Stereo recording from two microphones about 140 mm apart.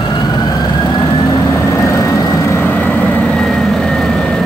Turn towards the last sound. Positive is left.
turn(degrees=5)  # may be behind; listen again after turning